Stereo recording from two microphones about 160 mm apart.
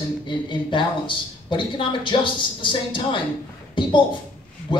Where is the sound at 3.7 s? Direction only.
30° left (ahead or behind).